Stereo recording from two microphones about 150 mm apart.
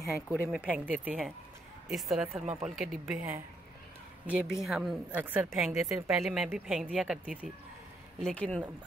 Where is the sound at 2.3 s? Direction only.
45° right (ahead or behind).